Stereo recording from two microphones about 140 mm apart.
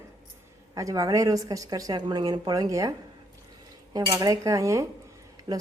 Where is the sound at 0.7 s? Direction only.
25° right (ahead or behind).